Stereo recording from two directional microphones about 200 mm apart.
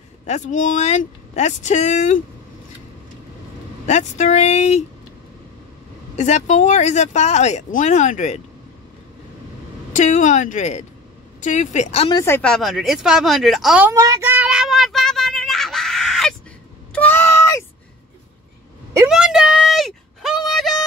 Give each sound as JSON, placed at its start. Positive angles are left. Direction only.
{"t": 0.3, "sound": "speech", "side_deg": 40}
{"t": 3.8, "sound": "speech", "side_deg": 35}
{"t": 6.1, "sound": "speech", "side_deg": 35}
{"t": 9.9, "sound": "speech", "side_deg": 40}
{"t": 12.2, "sound": "a sound", "side_deg": 10}
{"t": 19.0, "sound": "a sound", "side_deg": -5}